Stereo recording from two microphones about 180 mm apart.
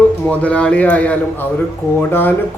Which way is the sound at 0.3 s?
5° left (ahead or behind).